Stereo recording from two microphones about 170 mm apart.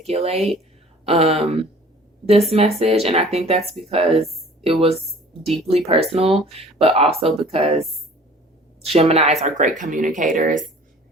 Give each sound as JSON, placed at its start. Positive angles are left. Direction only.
{"t": 0.1, "sound": "speech", "side_deg": -35}